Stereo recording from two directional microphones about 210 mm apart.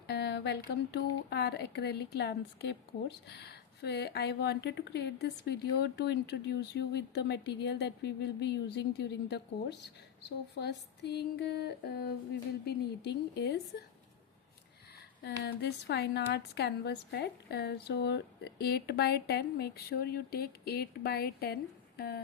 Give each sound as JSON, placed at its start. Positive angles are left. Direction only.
{"t": 0.1, "sound": "a sound", "side_deg": 50}
{"t": 0.7, "sound": "a woman's voice", "side_deg": 55}
{"t": 15.2, "sound": "a woman's voice", "side_deg": 55}